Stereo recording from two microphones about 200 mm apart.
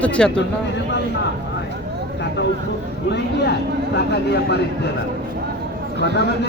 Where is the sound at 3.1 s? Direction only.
60° left (ahead or behind).